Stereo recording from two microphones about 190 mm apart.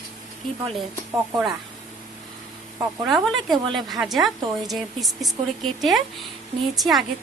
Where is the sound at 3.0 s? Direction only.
Centre (ahead or behind).